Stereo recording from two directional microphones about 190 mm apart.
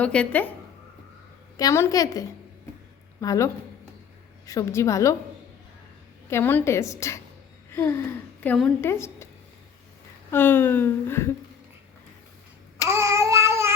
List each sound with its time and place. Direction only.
0.0 s speech: 5° left (ahead or behind)
1.5 s a woman's voice: 15° left (ahead or behind)
6.3 s speech: 10° left (ahead or behind)
7.7 s a sound: 15° left (ahead or behind)
8.4 s a woman's voice: 5° left (ahead or behind)
8.8 s speech: 15° left (ahead or behind)
10.3 s speech: 10° left (ahead or behind)
12.9 s child singing: 15° right (ahead or behind)